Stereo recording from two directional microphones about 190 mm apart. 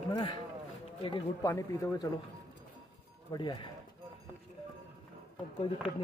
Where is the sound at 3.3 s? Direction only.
20° left (ahead or behind).